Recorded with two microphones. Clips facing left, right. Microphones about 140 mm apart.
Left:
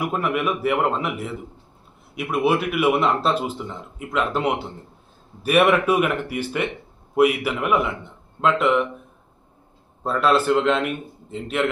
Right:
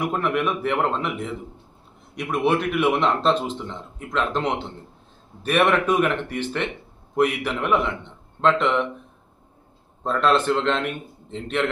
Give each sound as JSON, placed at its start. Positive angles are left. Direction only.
{"t": 0.0, "sound": "a man's voice", "side_deg": 5}
{"t": 10.0, "sound": "a man's voice", "side_deg": 5}